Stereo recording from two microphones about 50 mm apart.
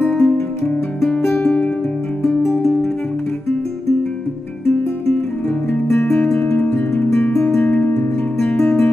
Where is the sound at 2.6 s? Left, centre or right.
Centre.